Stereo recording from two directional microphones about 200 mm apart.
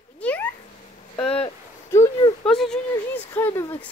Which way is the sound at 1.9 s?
15° left (ahead or behind).